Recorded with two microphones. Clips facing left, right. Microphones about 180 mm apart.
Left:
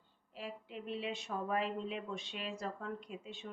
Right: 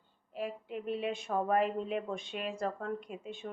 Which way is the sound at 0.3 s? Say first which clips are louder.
Right 7 dB; 50° right (ahead or behind).